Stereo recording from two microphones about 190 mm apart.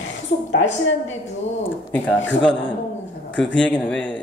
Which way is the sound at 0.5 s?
70° left (ahead or behind).